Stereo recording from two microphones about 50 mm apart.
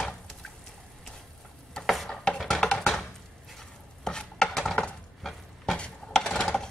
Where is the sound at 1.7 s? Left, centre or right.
Centre.